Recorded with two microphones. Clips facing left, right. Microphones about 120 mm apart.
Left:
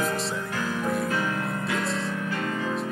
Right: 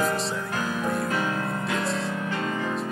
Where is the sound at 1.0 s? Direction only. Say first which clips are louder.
Right 1 dB; 25° right (ahead or behind).